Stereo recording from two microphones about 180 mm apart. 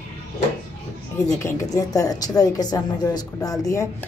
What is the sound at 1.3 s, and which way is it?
A woman's voice, 15° left (ahead or behind).